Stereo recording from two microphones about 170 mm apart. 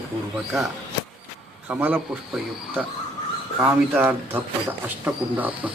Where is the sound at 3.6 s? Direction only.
10° right (ahead or behind).